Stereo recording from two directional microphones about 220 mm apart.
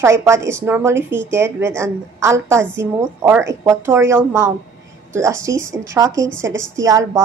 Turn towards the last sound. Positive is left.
turn(degrees=-15)  # may be behind; listen again after turning